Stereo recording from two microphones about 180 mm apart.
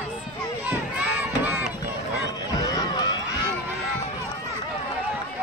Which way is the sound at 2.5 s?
20° left (ahead or behind).